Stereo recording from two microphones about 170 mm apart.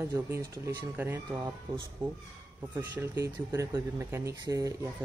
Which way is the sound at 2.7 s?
15° right (ahead or behind).